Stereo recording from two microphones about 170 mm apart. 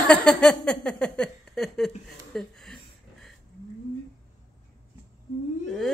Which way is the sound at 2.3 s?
5° left (ahead or behind).